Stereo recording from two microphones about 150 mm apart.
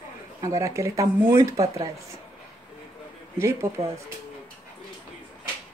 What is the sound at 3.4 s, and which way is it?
Speech, 20° right (ahead or behind).